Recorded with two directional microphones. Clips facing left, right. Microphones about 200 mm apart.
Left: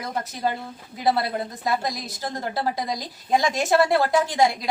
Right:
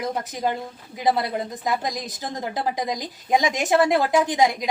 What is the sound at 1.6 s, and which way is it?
A woman's voice, 15° right (ahead or behind).